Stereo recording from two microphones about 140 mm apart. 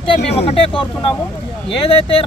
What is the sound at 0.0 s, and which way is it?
Speech, 40° left (ahead or behind).